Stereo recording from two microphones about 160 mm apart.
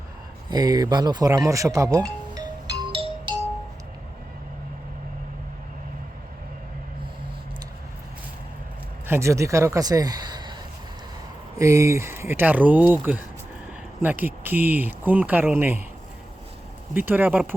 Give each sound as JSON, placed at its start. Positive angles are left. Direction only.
{"t": 0.5, "sound": "music", "side_deg": -25}
{"t": 9.0, "sound": "speech", "side_deg": -15}
{"t": 11.5, "sound": "speech", "side_deg": -20}
{"t": 16.9, "sound": "speech", "side_deg": -10}